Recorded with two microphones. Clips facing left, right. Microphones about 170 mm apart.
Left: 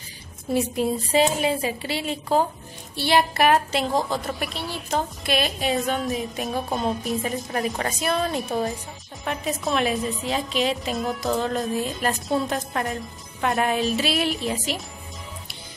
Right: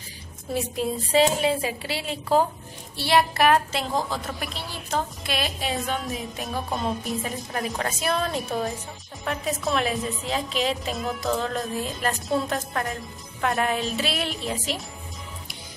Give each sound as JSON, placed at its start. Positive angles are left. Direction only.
{"t": 0.7, "sound": "a woman's voice", "side_deg": 0}